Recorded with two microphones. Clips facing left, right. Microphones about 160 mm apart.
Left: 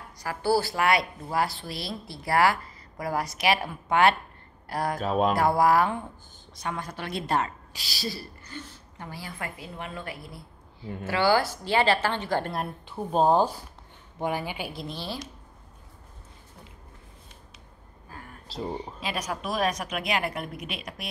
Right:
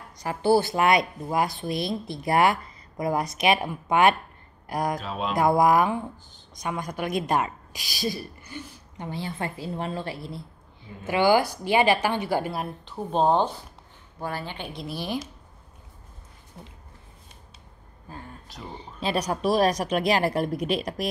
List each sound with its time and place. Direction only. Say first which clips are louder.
0.2 s a woman's voice: right 4 dB; 20° right (ahead or behind)
5.0 s a sound: left 7 dB; 50° left (ahead or behind)
5.3 s a woman's voice: right 5 dB; 15° right (ahead or behind)
12.8 s speech: even; 5° left (ahead or behind)
14.9 s a woman's voice: right 4 dB; 15° right (ahead or behind)
18.5 s speech: left 9 dB; 30° left (ahead or behind)
18.8 s speech: right 5 dB; 30° right (ahead or behind)